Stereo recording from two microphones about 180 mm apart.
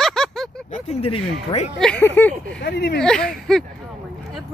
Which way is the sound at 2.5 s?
65° left (ahead or behind).